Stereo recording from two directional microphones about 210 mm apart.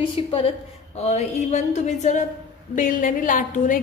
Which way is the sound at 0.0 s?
25° left (ahead or behind).